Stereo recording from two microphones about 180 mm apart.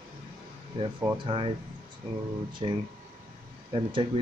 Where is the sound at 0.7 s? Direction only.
25° right (ahead or behind).